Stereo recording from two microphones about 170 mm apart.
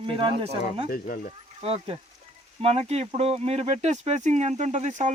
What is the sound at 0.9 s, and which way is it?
Speech, 55° left (ahead or behind).